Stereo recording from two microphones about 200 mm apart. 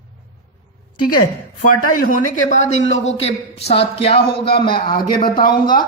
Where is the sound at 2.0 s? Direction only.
40° left (ahead or behind).